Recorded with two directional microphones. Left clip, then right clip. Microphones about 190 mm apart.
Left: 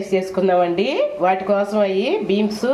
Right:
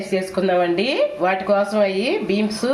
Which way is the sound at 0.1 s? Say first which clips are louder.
Left 2 dB; centre (ahead or behind).